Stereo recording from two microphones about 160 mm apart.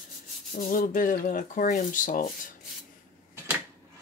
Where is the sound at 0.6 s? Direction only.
60° left (ahead or behind).